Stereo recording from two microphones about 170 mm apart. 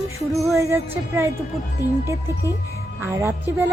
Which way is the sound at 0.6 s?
15° right (ahead or behind).